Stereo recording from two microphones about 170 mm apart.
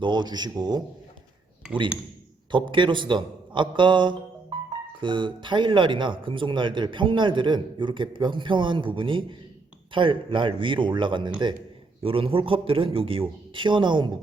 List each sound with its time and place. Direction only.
0.0 s speech: 25° right (ahead or behind)
2.5 s a man's voice: 25° right (ahead or behind)